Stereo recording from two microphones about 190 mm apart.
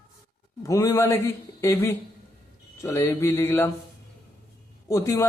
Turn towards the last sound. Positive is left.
turn(degrees=15)  # may be behind; listen again after turning